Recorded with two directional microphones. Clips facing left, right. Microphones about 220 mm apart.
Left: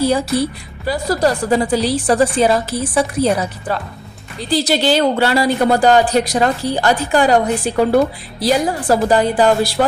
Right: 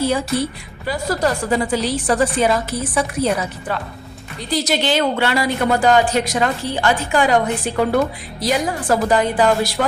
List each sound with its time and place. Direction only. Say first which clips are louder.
0.0 s a woman's voice: left 3 dB; 35° left (ahead or behind)